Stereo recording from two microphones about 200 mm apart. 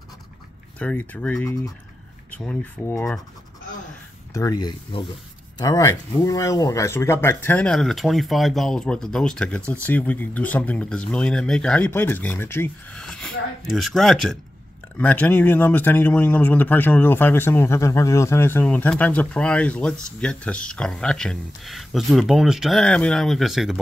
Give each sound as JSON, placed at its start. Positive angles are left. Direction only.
{"t": 0.7, "sound": "speech", "side_deg": 5}
{"t": 4.3, "sound": "speech", "side_deg": 15}